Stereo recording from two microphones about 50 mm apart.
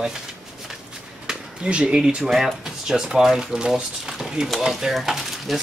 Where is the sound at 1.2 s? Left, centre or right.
Centre.